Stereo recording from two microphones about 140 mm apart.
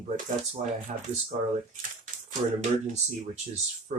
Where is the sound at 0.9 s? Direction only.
55° right (ahead or behind).